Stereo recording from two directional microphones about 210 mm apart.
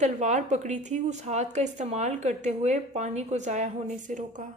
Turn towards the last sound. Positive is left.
turn(degrees=-35)  # may be behind; listen again after turning